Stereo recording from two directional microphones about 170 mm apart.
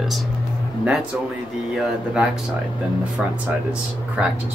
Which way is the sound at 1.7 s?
5° right (ahead or behind).